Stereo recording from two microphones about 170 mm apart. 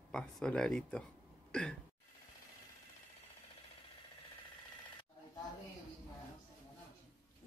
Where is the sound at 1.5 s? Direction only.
5° left (ahead or behind).